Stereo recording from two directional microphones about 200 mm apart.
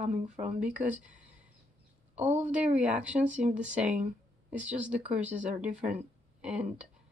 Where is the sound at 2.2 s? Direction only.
35° right (ahead or behind).